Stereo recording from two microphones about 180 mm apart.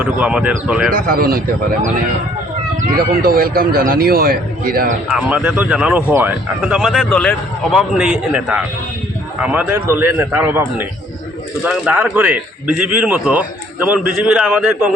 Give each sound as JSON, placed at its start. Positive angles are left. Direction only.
{"t": 0.0, "sound": "a man's voice", "side_deg": -5}
{"t": 0.9, "sound": "a man's voice", "side_deg": -50}
{"t": 2.9, "sound": "a man's voice", "side_deg": -55}
{"t": 5.0, "sound": "a man's voice", "side_deg": -5}